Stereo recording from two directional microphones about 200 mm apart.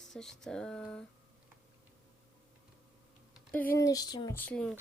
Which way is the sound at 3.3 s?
5° left (ahead or behind).